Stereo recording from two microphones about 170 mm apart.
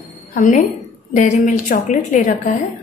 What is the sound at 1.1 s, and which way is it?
A woman's voice, 45° left (ahead or behind).